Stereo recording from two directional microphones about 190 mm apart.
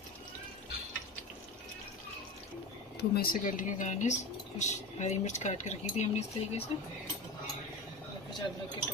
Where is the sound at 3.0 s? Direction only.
55° left (ahead or behind); by 6.6 s 35° left (ahead or behind).